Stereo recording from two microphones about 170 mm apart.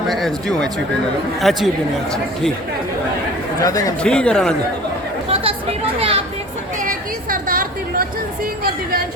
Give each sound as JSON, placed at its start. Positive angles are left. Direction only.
{"t": 0.1, "sound": "speech", "side_deg": 0}
{"t": 3.6, "sound": "a man's voice", "side_deg": 20}
{"t": 4.0, "sound": "speech", "side_deg": 5}
{"t": 5.3, "sound": "chatter", "side_deg": -35}
{"t": 6.7, "sound": "a sound", "side_deg": -55}